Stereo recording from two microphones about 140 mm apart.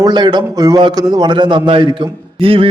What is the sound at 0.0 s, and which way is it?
A man's voice, 30° right (ahead or behind).